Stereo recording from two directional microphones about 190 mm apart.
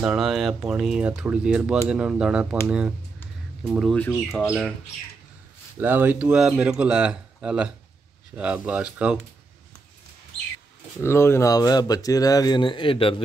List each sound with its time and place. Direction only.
0.0 s speech: 5° right (ahead or behind)
3.6 s speech: 5° right (ahead or behind)
3.9 s speech: 5° left (ahead or behind)
5.8 s speech: 10° right (ahead or behind)
11.0 s speech: 15° left (ahead or behind)